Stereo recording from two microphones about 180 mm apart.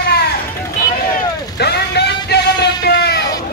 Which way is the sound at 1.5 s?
65° left (ahead or behind).